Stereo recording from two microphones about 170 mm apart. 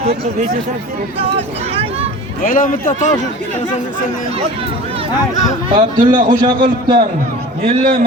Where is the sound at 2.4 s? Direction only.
50° left (ahead or behind).